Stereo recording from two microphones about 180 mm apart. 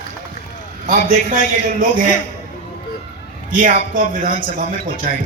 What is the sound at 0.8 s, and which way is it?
A man's voice, 45° right (ahead or behind).